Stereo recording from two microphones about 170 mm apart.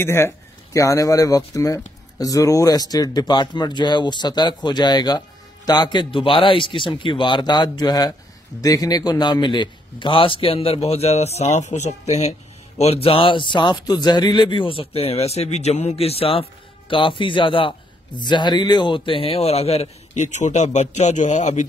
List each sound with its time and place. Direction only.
0.0 s a man's voice: 15° left (ahead or behind); by 21.6 s 45° left (ahead or behind)